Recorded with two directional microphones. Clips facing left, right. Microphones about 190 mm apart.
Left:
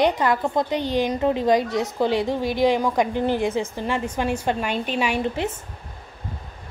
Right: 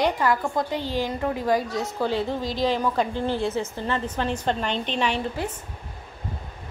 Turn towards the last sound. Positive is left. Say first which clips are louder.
# left 3 dB
turn(degrees=20)  # may be behind; listen again after turning